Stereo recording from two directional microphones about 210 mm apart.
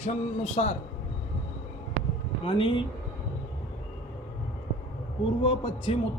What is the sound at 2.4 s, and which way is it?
Speech, 25° left (ahead or behind).